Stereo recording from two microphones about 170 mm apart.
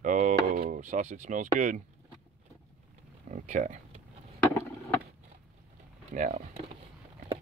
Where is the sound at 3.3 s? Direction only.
45° right (ahead or behind).